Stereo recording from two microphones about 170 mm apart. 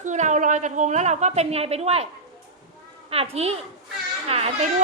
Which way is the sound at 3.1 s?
35° right (ahead or behind).